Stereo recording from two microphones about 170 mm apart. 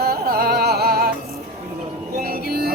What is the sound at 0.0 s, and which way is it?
Music, 65° right (ahead or behind).